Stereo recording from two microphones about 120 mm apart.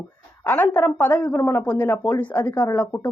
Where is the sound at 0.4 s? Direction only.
15° left (ahead or behind).